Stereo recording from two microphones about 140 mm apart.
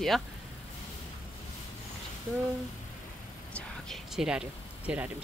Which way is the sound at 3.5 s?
Centre (ahead or behind).